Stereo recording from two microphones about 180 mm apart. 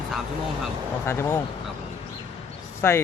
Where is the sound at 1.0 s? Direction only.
15° left (ahead or behind).